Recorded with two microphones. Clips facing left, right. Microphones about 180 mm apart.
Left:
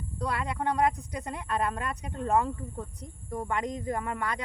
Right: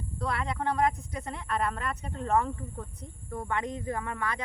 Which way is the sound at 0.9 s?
15° left (ahead or behind).